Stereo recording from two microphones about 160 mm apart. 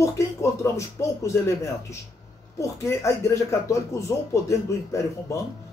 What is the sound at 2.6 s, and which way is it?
Speech, 20° left (ahead or behind).